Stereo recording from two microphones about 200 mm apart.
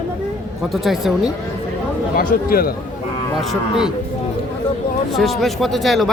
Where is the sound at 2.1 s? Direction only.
45° left (ahead or behind).